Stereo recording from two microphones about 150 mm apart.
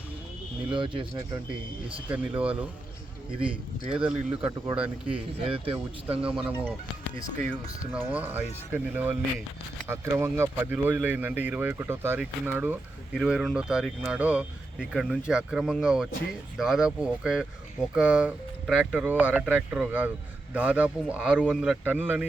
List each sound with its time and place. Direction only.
0.7 s speech: 35° right (ahead or behind)
2.0 s speech: 10° right (ahead or behind)
5.4 s speech: 35° right (ahead or behind)
6.2 s speech: 10° right (ahead or behind)
7.9 s speech: 10° right (ahead or behind)